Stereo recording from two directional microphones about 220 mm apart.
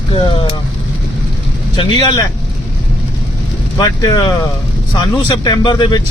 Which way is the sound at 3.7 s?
15° left (ahead or behind).